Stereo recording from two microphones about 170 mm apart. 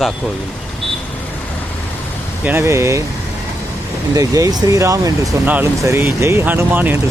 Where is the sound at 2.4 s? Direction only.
15° right (ahead or behind).